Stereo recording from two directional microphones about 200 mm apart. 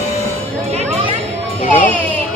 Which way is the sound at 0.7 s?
30° right (ahead or behind).